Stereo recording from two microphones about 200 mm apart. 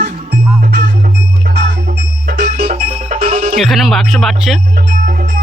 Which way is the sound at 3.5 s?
Centre (ahead or behind).